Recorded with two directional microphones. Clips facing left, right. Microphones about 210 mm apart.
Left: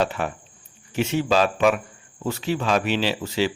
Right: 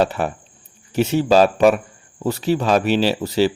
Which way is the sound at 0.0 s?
40° right (ahead or behind).